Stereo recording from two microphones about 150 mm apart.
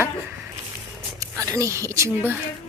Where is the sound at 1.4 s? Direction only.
20° right (ahead or behind).